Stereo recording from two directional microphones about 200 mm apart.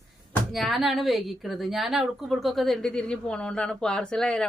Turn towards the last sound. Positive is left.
turn(degrees=5)  # may be behind; listen again after turning